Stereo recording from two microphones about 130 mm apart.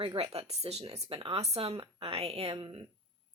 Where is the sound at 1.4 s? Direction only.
50° right (ahead or behind).